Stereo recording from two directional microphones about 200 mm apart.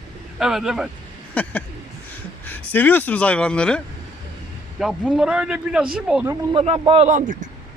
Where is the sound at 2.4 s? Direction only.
10° left (ahead or behind).